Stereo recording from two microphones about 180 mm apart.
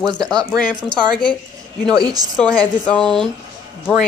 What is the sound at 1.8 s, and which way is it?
Speech, 20° right (ahead or behind).